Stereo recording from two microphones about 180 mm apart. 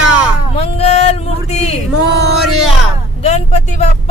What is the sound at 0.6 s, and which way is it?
Speech, 35° left (ahead or behind).